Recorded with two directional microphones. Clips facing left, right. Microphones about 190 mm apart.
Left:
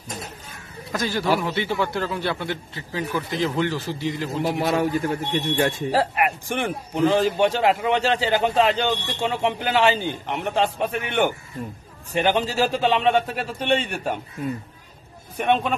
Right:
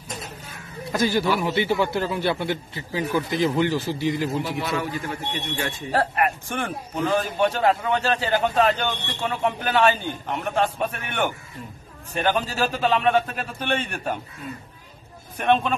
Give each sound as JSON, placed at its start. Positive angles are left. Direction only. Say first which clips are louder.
{"t": 0.9, "sound": "a man's voice", "louder": "right 1 dB", "side_deg": -5}
{"t": 4.4, "sound": "a man's voice", "louder": "left 5 dB", "side_deg": 40}
{"t": 5.9, "sound": "a man's voice", "louder": "left 1 dB", "side_deg": 15}
{"t": 15.3, "sound": "a man's voice", "louder": "right 1 dB", "side_deg": 15}